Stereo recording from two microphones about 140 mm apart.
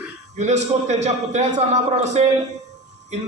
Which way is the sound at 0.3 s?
55° right (ahead or behind).